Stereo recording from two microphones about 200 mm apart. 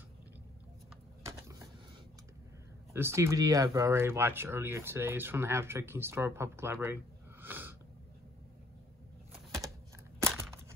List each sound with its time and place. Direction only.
1.2 s typewriter: 15° right (ahead or behind)
2.9 s speech: 10° right (ahead or behind)